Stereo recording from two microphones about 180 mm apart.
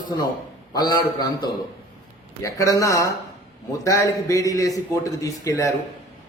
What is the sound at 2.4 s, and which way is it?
A man's voice, 20° left (ahead or behind).